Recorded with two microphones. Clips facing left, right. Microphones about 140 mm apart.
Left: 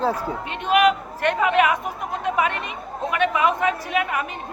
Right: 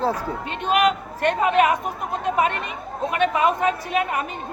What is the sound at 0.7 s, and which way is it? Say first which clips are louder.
A woman's voice: left 2 dB; 35° right (ahead or behind).